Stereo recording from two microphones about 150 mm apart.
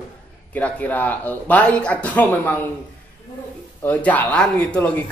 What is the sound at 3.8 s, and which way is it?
Speech, 10° left (ahead or behind).